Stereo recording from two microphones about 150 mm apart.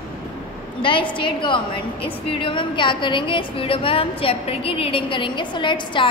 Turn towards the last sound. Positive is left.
turn(degrees=30)  # may be behind; listen again after turning